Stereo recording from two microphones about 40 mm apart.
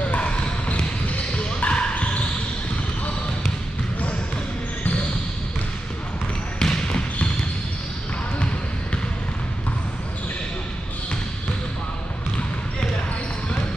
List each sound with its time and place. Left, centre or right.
0.0 s basketball bounce: left
6.6 s trickle: centre